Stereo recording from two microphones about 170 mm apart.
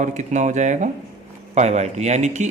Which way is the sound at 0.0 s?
45° right (ahead or behind).